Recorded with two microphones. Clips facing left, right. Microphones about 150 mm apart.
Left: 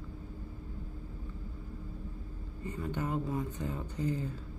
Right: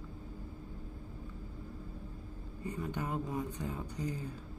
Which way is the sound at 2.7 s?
15° right (ahead or behind).